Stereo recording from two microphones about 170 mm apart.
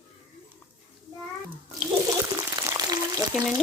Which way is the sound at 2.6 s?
20° right (ahead or behind).